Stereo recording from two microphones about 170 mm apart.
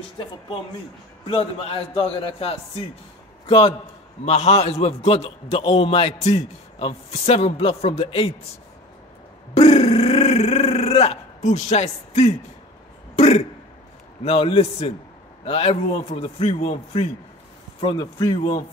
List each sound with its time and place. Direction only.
1.2 s a man's voice: 30° left (ahead or behind)
9.5 s a man's voice: 35° left (ahead or behind)